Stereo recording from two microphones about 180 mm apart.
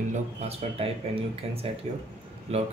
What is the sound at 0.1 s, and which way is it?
Speech, 35° right (ahead or behind).